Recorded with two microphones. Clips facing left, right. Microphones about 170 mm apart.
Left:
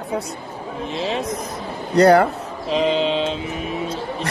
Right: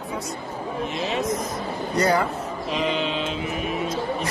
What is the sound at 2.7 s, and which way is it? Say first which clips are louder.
Mantra: left 7 dB; 30° left (ahead or behind).